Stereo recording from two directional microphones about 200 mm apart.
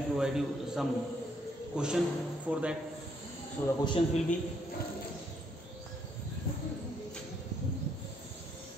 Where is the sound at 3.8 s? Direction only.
25° left (ahead or behind).